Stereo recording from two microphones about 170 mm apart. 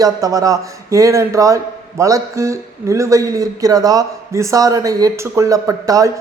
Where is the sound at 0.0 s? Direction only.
20° right (ahead or behind).